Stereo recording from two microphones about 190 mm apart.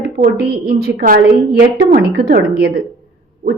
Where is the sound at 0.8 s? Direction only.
50° right (ahead or behind).